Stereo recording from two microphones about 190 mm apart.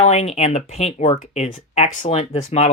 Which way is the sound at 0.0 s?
35° left (ahead or behind).